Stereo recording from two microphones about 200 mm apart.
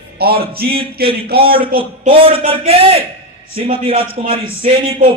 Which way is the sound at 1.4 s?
50° right (ahead or behind).